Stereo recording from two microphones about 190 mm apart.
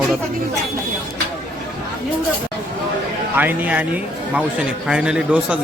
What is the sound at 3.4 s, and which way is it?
Speech, 10° right (ahead or behind).